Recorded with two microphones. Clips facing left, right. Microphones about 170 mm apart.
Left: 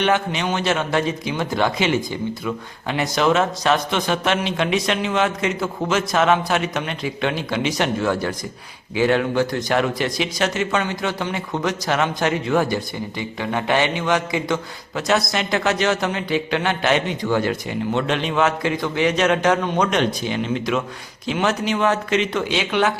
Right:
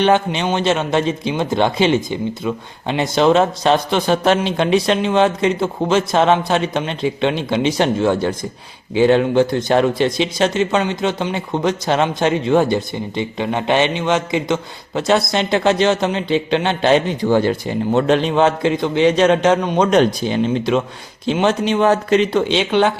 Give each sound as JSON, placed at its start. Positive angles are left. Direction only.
{"t": 0.0, "sound": "speech", "side_deg": -30}
{"t": 19.9, "sound": "speech", "side_deg": -35}